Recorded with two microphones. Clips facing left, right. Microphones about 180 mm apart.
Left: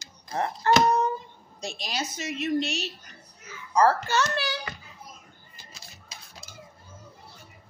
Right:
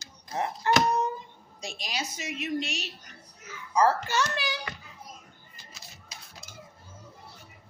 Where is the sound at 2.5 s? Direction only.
35° left (ahead or behind).